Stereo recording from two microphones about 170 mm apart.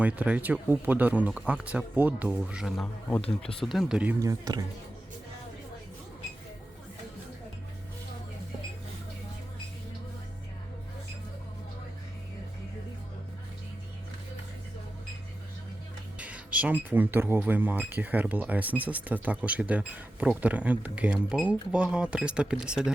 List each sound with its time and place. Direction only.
0.0 s speech: 10° right (ahead or behind)
4.2 s speech: 20° right (ahead or behind)
16.1 s speech: 5° right (ahead or behind)